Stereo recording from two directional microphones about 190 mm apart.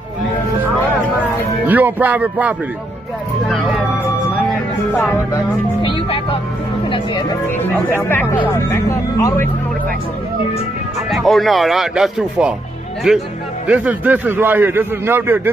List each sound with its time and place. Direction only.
1.7 s a man's voice: 10° right (ahead or behind)
5.3 s speech: 25° left (ahead or behind)
7.5 s speech: 10° left (ahead or behind)
11.1 s a man's voice: centre (ahead or behind)